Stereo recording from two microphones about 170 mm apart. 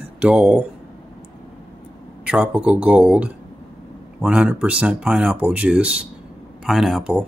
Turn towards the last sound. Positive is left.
turn(degrees=-5)  # may be behind; listen again after turning